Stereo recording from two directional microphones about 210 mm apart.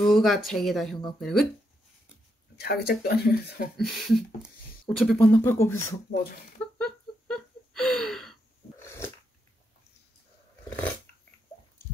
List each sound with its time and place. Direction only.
0.0 s speech: centre (ahead or behind)
2.6 s speech: 45° left (ahead or behind)
3.7 s speech: centre (ahead or behind)
6.6 s a sound: 5° left (ahead or behind)
8.8 s dog: 10° left (ahead or behind)